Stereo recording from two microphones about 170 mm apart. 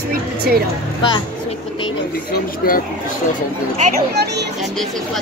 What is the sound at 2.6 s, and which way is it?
Speech, 60° left (ahead or behind).